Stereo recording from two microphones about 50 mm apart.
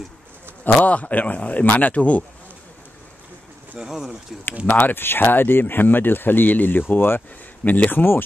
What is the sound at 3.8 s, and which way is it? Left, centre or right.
Speech, centre.